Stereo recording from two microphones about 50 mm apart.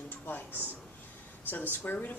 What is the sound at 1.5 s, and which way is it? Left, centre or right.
Speech, left.